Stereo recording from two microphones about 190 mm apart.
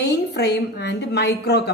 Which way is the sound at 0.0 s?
60° left (ahead or behind).